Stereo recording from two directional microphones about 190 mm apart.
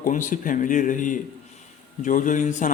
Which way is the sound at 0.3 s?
45° left (ahead or behind).